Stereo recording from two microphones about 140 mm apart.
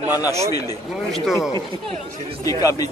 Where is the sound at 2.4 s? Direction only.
25° left (ahead or behind).